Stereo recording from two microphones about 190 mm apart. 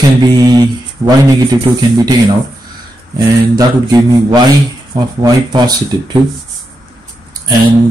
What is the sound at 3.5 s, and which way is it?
Speech, 20° right (ahead or behind).